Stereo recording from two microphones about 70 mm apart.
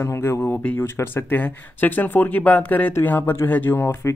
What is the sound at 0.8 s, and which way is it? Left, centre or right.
Speech, left.